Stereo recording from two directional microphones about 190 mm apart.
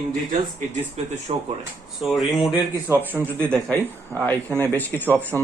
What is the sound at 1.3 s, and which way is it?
Speech, 30° right (ahead or behind).